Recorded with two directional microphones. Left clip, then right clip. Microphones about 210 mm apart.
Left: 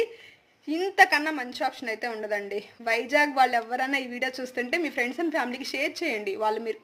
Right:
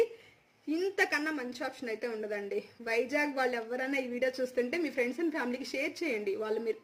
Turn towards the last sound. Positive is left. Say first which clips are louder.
# left 5 dB
turn(degrees=-15)  # may be behind; listen again after turning